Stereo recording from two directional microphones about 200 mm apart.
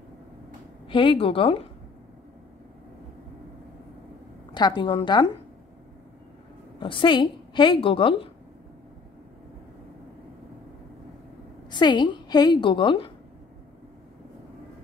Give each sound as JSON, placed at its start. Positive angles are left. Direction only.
{"t": 0.8, "sound": "a woman's voice", "side_deg": 25}
{"t": 4.6, "sound": "a woman's voice", "side_deg": 20}
{"t": 6.8, "sound": "a woman's voice", "side_deg": 25}
{"t": 11.7, "sound": "a woman's voice", "side_deg": 20}